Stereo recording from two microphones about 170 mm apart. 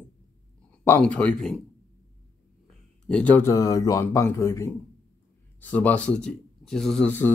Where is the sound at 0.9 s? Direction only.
5° left (ahead or behind).